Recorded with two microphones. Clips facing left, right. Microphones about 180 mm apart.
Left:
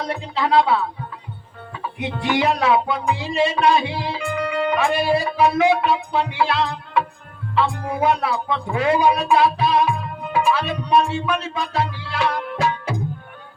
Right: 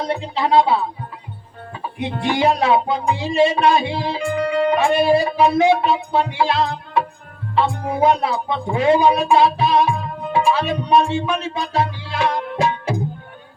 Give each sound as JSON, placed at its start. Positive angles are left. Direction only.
{"t": 0.1, "sound": "speech", "side_deg": -30}
{"t": 1.7, "sound": "music", "side_deg": -35}
{"t": 7.5, "sound": "speech", "side_deg": -35}